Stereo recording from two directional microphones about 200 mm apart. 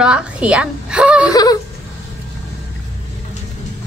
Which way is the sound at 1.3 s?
20° left (ahead or behind).